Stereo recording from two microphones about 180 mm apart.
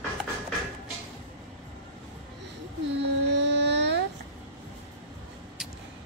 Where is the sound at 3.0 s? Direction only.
75° right (ahead or behind).